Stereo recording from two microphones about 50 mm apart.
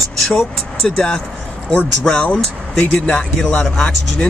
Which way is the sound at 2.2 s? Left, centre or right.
Left.